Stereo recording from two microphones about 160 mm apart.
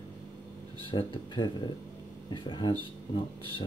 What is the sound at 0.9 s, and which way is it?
Speech, 30° left (ahead or behind).